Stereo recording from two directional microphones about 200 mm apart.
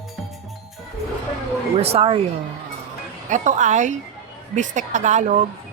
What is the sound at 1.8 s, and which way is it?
Speech, 30° right (ahead or behind).